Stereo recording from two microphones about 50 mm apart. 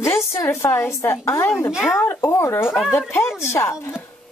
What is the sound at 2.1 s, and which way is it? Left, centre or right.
A woman's voice, left.